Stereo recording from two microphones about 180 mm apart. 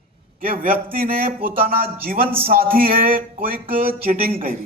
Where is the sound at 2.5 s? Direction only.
55° right (ahead or behind).